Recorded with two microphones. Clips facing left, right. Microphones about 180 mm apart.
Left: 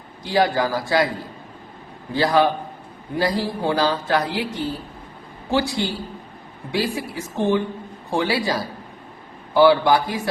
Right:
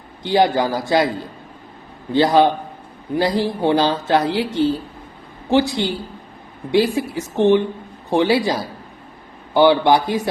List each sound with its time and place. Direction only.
0.2 s speech: 20° right (ahead or behind)
2.1 s speech: 20° right (ahead or behind)
9.6 s speech: 20° right (ahead or behind)